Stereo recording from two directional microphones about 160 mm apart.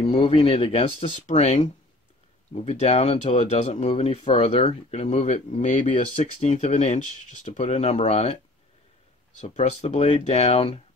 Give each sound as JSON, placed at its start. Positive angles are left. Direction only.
{"t": 0.0, "sound": "speech", "side_deg": 35}
{"t": 5.1, "sound": "speech", "side_deg": 45}
{"t": 9.4, "sound": "speech", "side_deg": 45}